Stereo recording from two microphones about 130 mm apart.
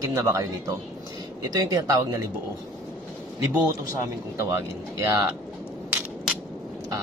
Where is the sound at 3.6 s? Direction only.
25° right (ahead or behind).